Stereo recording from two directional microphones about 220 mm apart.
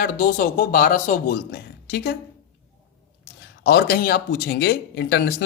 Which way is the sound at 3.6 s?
45° left (ahead or behind).